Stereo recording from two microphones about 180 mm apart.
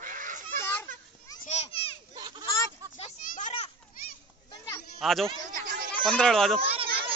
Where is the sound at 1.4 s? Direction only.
35° left (ahead or behind).